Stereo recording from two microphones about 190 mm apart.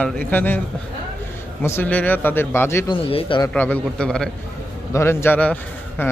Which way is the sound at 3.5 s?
10° left (ahead or behind).